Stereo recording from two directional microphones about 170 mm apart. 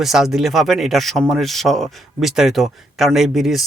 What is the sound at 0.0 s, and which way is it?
Speech, centre (ahead or behind).